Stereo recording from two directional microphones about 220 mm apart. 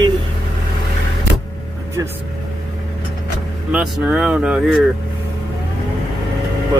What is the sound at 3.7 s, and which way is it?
Speech, 5° right (ahead or behind).